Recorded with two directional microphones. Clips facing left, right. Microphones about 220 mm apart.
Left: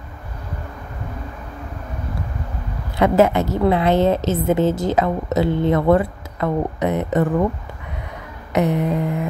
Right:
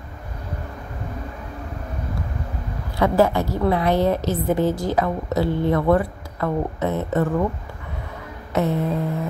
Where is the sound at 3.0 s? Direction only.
20° left (ahead or behind).